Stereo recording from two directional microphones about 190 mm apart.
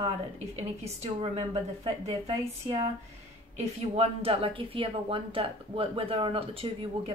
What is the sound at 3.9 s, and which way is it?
A woman's voice, 30° right (ahead or behind).